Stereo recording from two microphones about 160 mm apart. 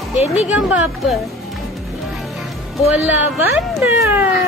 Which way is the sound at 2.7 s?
10° right (ahead or behind).